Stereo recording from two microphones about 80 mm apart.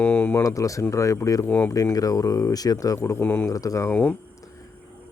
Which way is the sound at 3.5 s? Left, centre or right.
Left.